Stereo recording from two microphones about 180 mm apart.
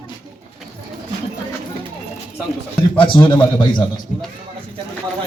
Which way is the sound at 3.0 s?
25° left (ahead or behind).